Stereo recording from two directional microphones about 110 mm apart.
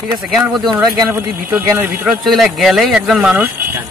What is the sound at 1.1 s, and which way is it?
Speech, 20° right (ahead or behind).